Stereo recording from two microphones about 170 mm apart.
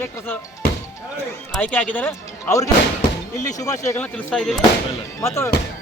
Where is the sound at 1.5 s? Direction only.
10° left (ahead or behind).